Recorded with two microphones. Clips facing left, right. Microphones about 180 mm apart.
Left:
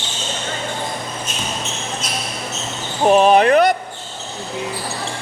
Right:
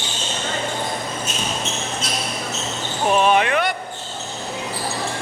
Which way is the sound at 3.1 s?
35° left (ahead or behind).